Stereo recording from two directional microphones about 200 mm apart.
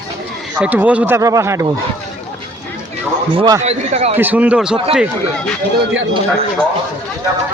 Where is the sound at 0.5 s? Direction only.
10° right (ahead or behind).